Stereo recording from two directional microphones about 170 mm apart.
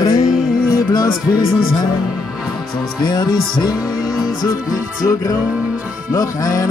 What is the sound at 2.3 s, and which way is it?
Music, centre (ahead or behind).